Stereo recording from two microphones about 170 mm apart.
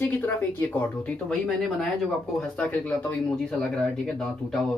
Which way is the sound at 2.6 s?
10° left (ahead or behind).